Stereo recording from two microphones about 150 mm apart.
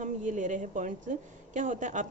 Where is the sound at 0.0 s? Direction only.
55° right (ahead or behind).